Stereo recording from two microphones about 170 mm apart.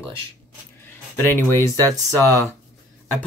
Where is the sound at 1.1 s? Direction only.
15° left (ahead or behind).